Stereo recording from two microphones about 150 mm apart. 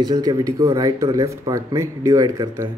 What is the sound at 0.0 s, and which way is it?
Speech, 25° right (ahead or behind).